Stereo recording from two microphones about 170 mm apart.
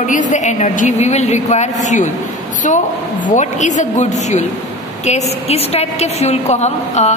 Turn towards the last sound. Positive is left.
turn(degrees=40)  # may be behind; listen again after turning